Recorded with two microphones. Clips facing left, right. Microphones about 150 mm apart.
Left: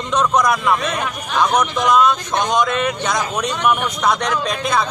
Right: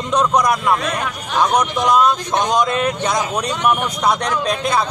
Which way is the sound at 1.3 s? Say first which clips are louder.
Right 1 dB; 15° right (ahead or behind).